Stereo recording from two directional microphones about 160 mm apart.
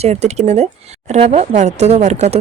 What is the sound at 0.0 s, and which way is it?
Speech, 40° right (ahead or behind).